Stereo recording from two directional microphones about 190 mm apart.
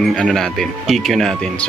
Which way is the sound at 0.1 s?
5° left (ahead or behind).